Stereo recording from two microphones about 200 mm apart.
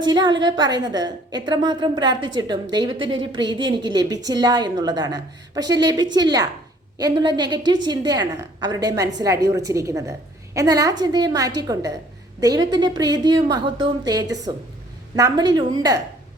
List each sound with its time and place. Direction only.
0.0 s a woman's voice: 20° right (ahead or behind)